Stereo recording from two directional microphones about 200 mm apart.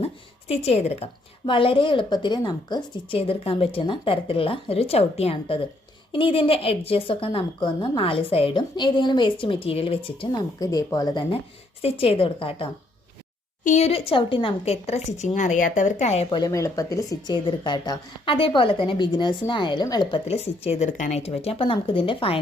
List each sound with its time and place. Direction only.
0.0 s a woman's voice: 30° left (ahead or behind)
16.4 s speech: 15° left (ahead or behind)